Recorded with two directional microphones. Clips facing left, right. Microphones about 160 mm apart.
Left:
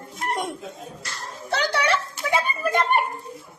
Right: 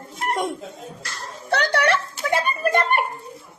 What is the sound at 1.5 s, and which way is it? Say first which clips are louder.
A child's voice: right 3 dB; 65° right (ahead or behind).